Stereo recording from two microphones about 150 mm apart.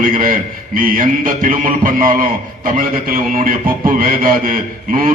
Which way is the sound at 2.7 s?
65° right (ahead or behind).